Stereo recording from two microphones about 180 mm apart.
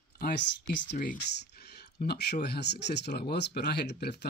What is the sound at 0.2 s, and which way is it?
Speech, 75° left (ahead or behind).